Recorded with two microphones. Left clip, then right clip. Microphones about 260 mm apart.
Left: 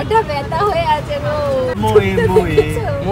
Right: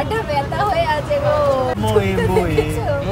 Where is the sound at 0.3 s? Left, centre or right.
Centre.